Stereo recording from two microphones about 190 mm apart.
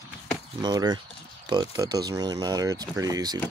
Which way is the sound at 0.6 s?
20° right (ahead or behind).